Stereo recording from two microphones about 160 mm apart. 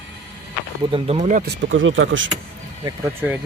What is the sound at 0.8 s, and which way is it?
Speech, 35° right (ahead or behind).